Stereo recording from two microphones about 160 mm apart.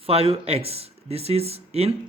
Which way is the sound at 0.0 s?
40° right (ahead or behind).